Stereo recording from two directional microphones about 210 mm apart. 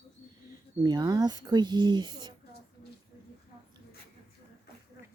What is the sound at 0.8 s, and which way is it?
Speech, 20° right (ahead or behind).